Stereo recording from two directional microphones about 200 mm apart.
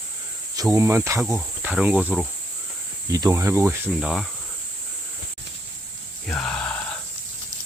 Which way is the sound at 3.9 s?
Centre (ahead or behind).